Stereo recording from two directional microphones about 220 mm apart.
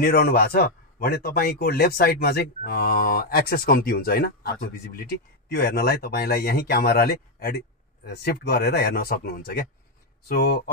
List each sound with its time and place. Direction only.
0.0 s speech: 45° left (ahead or behind)